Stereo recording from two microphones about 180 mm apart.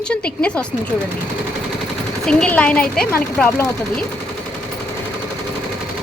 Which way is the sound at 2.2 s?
5° left (ahead or behind).